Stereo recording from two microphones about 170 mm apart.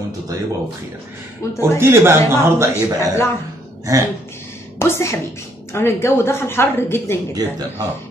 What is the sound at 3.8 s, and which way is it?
Speech, 20° right (ahead or behind).